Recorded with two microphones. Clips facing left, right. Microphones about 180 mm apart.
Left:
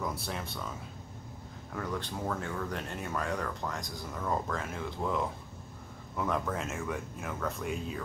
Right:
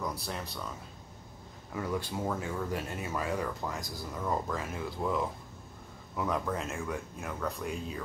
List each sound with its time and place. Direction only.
0.0 s speech: centre (ahead or behind)